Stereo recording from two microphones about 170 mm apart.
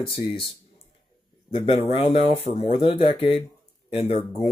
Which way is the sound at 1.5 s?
30° left (ahead or behind).